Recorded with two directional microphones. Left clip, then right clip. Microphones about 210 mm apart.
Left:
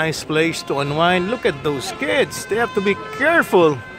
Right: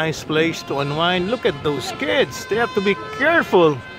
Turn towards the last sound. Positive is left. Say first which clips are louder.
# left 1 dB
turn(degrees=15)  # may be behind; listen again after turning